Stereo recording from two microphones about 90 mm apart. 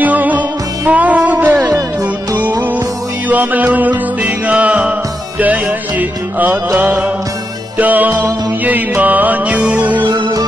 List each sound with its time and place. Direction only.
0.0 s music: 20° right (ahead or behind)
3.3 s music: 15° right (ahead or behind)
10.0 s music: 55° right (ahead or behind)